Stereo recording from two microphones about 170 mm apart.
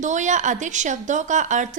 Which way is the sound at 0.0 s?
45° right (ahead or behind).